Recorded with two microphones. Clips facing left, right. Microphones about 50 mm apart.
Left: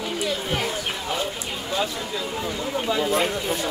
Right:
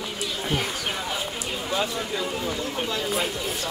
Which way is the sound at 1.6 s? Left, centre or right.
Centre.